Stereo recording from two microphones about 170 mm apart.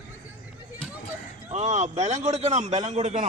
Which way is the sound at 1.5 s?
40° right (ahead or behind).